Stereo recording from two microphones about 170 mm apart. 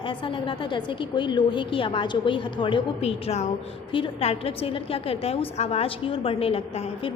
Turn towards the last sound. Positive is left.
turn(degrees=35)  # may be behind; listen again after turning